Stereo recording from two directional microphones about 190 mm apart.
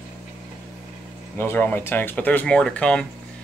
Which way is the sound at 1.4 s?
10° left (ahead or behind).